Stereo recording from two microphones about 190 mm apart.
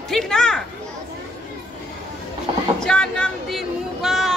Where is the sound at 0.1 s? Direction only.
Centre (ahead or behind).